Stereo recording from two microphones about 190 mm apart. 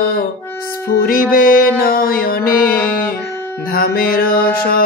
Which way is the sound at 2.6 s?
10° left (ahead or behind).